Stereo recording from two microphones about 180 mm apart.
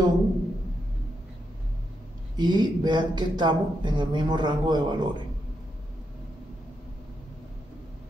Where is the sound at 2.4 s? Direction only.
25° right (ahead or behind).